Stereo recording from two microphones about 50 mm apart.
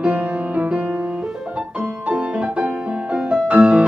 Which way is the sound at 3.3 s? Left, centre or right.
Right.